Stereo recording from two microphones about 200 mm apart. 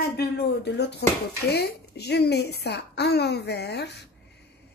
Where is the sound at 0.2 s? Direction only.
55° left (ahead or behind).